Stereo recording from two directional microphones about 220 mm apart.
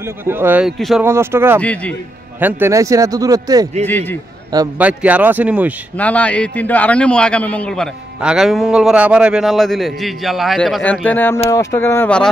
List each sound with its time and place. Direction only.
0.2 s a man's voice: 10° right (ahead or behind)
1.0 s a man's voice: 10° right (ahead or behind)
1.6 s speech: 5° left (ahead or behind)
2.4 s a man's voice: 10° right (ahead or behind)
3.8 s speech: 10° left (ahead or behind)
4.7 s a man's voice: 5° right (ahead or behind)
5.9 s a man's voice: 5° left (ahead or behind)